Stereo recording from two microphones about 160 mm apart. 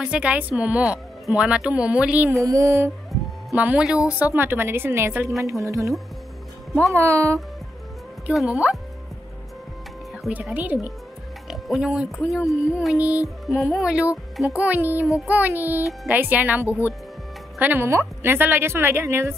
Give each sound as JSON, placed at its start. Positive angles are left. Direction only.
{"t": 0.0, "sound": "speech", "side_deg": -5}
{"t": 3.1, "sound": "music", "side_deg": 0}
{"t": 3.6, "sound": "speech", "side_deg": -5}
{"t": 8.3, "sound": "speech", "side_deg": -5}
{"t": 10.2, "sound": "speech", "side_deg": 0}
{"t": 10.5, "sound": "speech", "side_deg": -10}
{"t": 11.4, "sound": "speech", "side_deg": 0}